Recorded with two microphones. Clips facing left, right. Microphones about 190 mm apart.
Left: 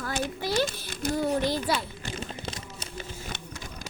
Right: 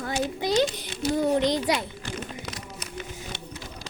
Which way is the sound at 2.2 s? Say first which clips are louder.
Even; 30° left (ahead or behind).